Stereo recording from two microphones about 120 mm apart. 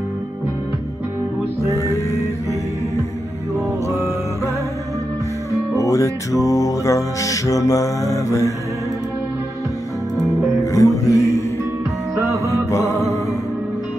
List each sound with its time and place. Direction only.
1.7 s music: 25° left (ahead or behind)
5.8 s music: 25° left (ahead or behind)
10.1 s music: centre (ahead or behind)
10.6 s music: 30° left (ahead or behind)
12.3 s music: 25° right (ahead or behind)
12.6 s music: 25° left (ahead or behind)